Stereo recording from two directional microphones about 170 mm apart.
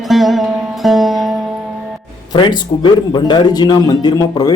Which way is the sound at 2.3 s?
25° left (ahead or behind).